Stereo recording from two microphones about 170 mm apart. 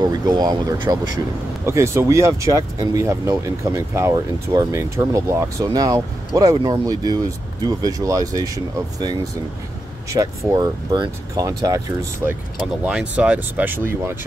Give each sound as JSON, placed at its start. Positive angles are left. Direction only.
{"t": 0.0, "sound": "speech", "side_deg": -25}
{"t": 12.8, "sound": "speech", "side_deg": -5}